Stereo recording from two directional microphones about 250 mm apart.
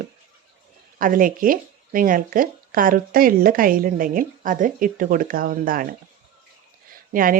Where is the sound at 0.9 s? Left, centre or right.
Right.